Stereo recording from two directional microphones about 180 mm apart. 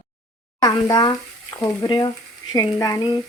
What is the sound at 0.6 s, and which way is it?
Frying, 20° left (ahead or behind).